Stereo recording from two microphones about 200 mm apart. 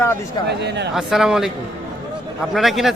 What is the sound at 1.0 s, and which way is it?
A man's voice, centre (ahead or behind).